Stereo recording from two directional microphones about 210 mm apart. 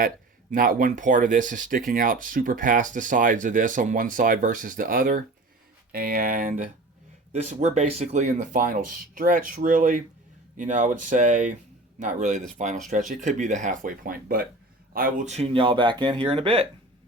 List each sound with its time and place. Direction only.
0.5 s speech: 40° right (ahead or behind); by 16.6 s 25° right (ahead or behind)